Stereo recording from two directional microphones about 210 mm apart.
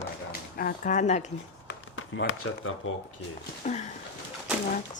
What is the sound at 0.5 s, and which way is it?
Speech, 40° left (ahead or behind).